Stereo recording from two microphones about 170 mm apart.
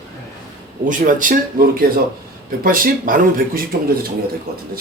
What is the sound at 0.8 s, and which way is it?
Speech, 55° right (ahead or behind).